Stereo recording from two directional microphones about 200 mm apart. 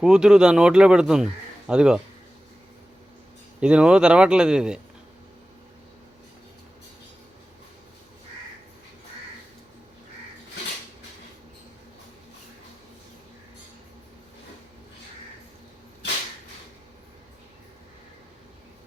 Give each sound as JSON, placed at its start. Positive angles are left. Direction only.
{"t": 0.0, "sound": "speech", "side_deg": -5}
{"t": 3.6, "sound": "speech", "side_deg": -5}